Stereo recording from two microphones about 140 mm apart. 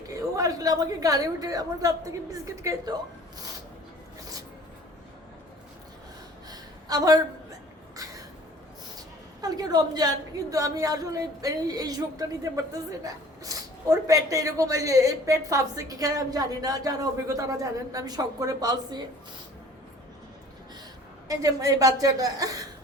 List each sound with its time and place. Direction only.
0.1 s a woman's voice: 25° right (ahead or behind)
6.5 s a sound: 25° right (ahead or behind)
9.0 s a woman's voice: 25° right (ahead or behind)
21.2 s a woman's voice: 25° right (ahead or behind)